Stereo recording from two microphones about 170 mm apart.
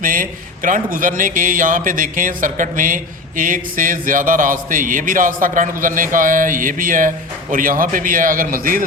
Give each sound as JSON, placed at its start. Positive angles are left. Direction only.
{"t": 0.0, "sound": "a man's voice", "side_deg": -55}